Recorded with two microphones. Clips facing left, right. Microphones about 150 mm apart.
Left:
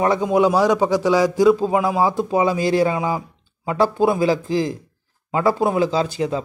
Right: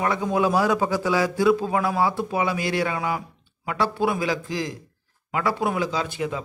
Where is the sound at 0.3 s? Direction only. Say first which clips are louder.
Left 4 dB; 15° left (ahead or behind).